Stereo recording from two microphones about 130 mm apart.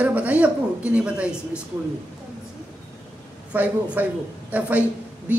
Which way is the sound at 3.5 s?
15° right (ahead or behind).